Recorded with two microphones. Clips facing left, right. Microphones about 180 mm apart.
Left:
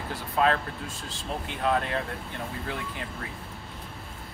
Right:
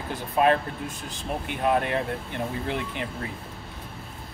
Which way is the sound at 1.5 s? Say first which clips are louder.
Right 3 dB; 15° right (ahead or behind).